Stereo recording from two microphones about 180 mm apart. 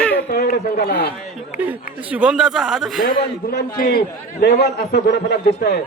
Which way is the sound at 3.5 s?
60° left (ahead or behind).